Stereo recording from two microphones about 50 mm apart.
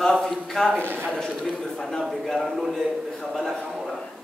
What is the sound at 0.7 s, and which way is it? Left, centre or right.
Speech, right.